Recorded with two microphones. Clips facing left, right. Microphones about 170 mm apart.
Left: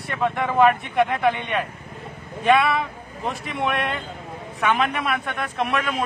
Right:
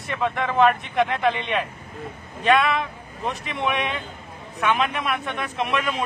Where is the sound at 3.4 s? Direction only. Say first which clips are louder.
Left 1 dB; centre (ahead or behind).